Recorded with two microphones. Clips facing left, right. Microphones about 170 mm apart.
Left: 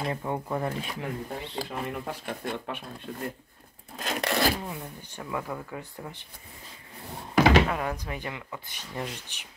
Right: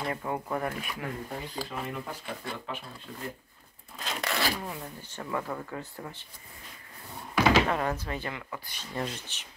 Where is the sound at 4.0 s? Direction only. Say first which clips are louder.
Left 5 dB; 50° left (ahead or behind).